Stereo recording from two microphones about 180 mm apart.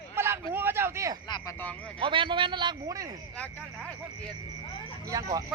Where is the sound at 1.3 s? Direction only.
25° left (ahead or behind).